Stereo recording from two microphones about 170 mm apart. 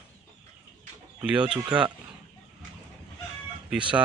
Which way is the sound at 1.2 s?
5° right (ahead or behind).